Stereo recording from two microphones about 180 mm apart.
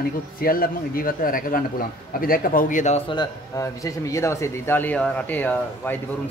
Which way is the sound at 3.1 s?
20° left (ahead or behind).